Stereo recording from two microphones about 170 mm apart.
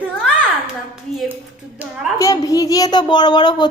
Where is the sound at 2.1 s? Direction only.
20° left (ahead or behind).